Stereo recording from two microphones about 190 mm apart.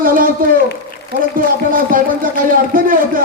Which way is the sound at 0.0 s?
45° right (ahead or behind).